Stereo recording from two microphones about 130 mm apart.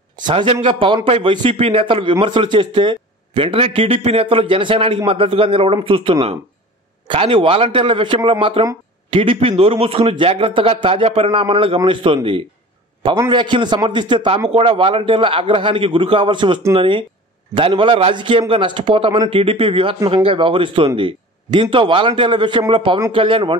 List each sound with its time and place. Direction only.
0.2 s a man's voice: 40° right (ahead or behind)